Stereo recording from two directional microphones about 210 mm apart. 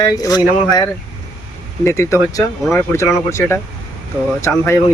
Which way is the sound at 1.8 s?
15° left (ahead or behind).